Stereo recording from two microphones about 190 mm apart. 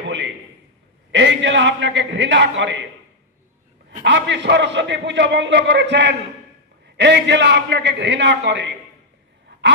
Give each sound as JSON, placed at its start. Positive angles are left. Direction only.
{"t": 1.1, "sound": "a man's voice", "side_deg": -70}
{"t": 4.0, "sound": "a man's voice", "side_deg": -70}